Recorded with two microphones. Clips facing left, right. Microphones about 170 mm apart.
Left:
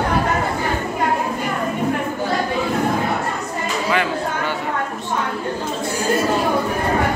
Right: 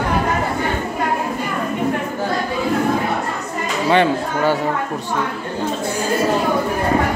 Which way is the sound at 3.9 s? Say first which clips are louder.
Right 7 dB; 30° right (ahead or behind).